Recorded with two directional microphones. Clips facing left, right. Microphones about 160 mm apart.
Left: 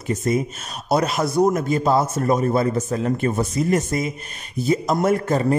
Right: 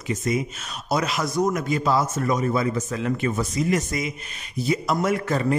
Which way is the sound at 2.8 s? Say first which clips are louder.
Left 4 dB; 35° left (ahead or behind).